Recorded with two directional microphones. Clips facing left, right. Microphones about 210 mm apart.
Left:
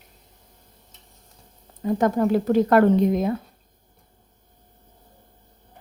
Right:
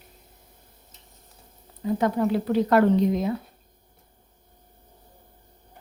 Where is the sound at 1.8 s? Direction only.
45° left (ahead or behind).